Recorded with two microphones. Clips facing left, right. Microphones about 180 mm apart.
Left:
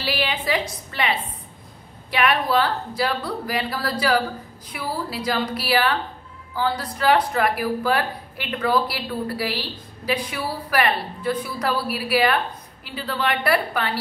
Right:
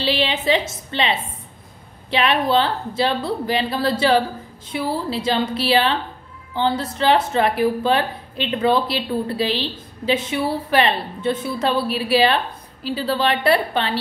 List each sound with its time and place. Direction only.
0.0 s a woman's voice: 25° right (ahead or behind)